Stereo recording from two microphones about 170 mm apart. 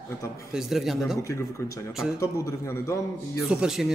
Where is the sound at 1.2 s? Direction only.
15° left (ahead or behind).